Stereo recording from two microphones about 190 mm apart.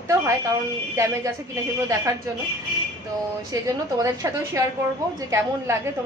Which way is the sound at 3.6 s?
15° right (ahead or behind).